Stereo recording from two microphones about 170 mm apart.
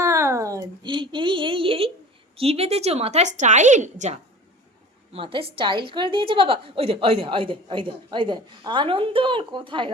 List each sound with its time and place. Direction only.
0.0 s a sound: 15° right (ahead or behind); by 1.9 s 35° right (ahead or behind)
2.3 s a woman's voice: 35° right (ahead or behind)
5.1 s a woman's voice: 30° right (ahead or behind)